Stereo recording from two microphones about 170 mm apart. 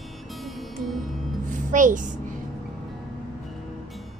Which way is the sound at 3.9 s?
Centre (ahead or behind).